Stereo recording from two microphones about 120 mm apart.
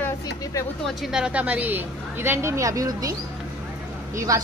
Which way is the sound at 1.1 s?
5° right (ahead or behind).